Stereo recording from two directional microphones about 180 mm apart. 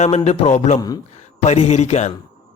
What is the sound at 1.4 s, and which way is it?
Speech, 40° left (ahead or behind).